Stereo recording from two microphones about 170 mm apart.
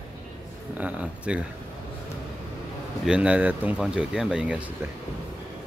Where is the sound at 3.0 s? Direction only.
5° right (ahead or behind).